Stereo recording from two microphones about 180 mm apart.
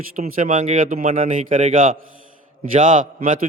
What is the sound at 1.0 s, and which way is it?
Mantra, 35° right (ahead or behind).